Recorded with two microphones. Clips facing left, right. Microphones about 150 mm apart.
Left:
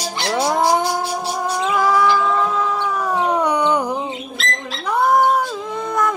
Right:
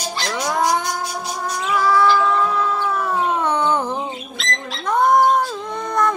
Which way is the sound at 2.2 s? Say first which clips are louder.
Even; 15° left (ahead or behind).